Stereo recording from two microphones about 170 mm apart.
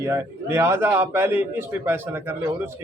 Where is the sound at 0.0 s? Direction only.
15° right (ahead or behind).